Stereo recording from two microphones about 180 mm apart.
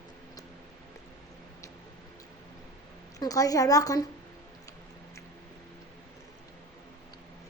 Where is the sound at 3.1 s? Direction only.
20° left (ahead or behind).